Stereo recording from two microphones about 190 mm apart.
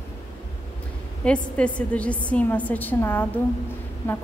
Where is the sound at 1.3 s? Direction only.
5° left (ahead or behind).